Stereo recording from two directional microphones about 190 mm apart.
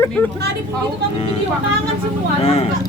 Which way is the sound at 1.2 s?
30° left (ahead or behind).